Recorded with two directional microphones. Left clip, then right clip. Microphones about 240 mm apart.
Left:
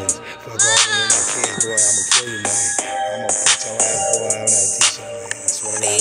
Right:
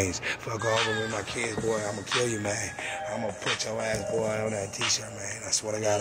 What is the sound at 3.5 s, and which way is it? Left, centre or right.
Music, left.